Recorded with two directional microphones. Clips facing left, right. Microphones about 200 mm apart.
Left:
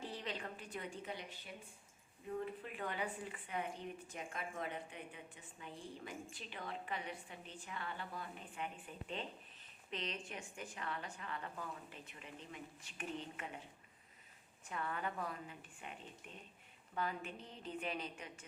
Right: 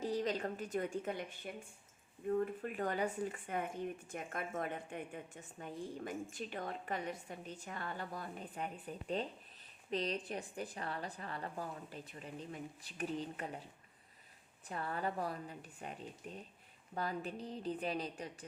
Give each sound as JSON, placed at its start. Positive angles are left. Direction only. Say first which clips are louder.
{"t": 0.0, "sound": "a woman's voice", "louder": "right 9 dB", "side_deg": -40}
{"t": 14.7, "sound": "a woman's voice", "louder": "right 3 dB", "side_deg": -35}